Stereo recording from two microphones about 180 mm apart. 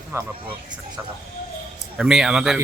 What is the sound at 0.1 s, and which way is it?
Speech, 15° right (ahead or behind).